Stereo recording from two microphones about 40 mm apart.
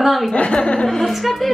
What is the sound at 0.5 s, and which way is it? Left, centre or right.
Speech, left.